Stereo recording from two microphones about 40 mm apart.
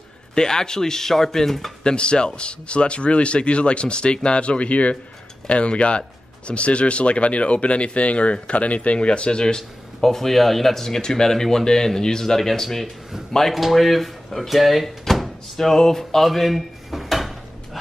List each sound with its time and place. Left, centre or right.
0.3 s speech: centre
1.8 s speech: left
9.9 s speech: centre
13.6 s speech: centre
16.3 s dishes: centre